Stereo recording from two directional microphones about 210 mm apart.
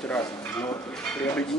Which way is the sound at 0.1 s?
5° left (ahead or behind).